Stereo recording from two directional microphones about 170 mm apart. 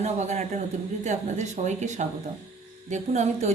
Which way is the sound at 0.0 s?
40° right (ahead or behind).